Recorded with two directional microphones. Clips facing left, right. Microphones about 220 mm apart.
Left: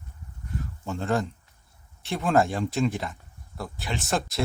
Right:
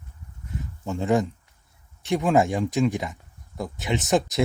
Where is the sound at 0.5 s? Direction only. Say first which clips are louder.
Right 2 dB; 15° right (ahead or behind).